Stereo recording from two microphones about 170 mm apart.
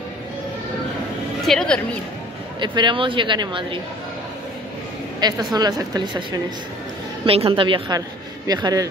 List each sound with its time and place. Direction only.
1.5 s speech: 5° left (ahead or behind)
2.6 s speech: 25° right (ahead or behind)
5.2 s speech: 25° right (ahead or behind)
7.2 s a woman's voice: 35° right (ahead or behind)